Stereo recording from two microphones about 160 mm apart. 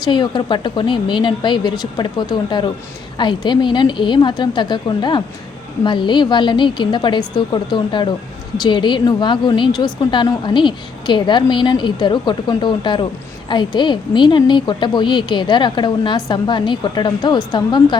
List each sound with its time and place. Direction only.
0.0 s a woman's voice: 30° left (ahead or behind)